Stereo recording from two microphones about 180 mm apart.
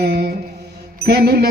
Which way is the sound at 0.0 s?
65° right (ahead or behind).